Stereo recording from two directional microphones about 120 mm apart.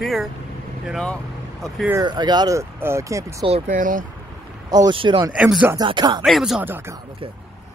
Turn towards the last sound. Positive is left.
turn(degrees=-20)  # may be behind; listen again after turning